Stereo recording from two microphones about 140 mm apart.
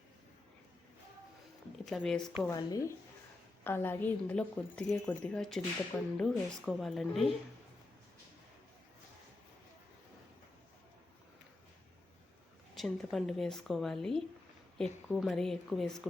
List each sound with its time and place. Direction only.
1.8 s a woman's voice: 5° left (ahead or behind)
2.5 s speech: 25° left (ahead or behind)
3.6 s a woman's voice: 15° left (ahead or behind)
12.7 s a woman's voice: centre (ahead or behind)